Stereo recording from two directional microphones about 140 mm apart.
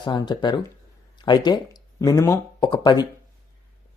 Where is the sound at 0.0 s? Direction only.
30° left (ahead or behind).